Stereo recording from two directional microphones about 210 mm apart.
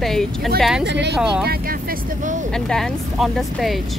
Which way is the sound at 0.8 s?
55° right (ahead or behind).